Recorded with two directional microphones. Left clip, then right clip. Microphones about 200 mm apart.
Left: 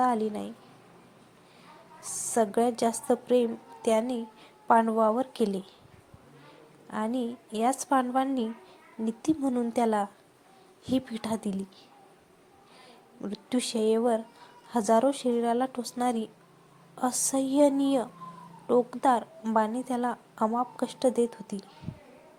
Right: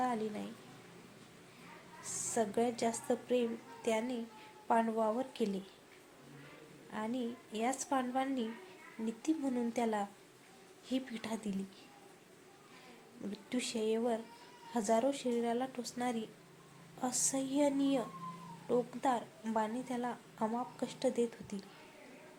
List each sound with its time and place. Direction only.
0.0 s a woman's voice: 30° left (ahead or behind)
2.0 s a woman's voice: 30° left (ahead or behind)
6.9 s a woman's voice: 35° left (ahead or behind)
13.2 s a woman's voice: 30° left (ahead or behind)